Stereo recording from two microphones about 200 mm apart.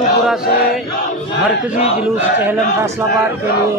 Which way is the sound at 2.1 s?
10° right (ahead or behind).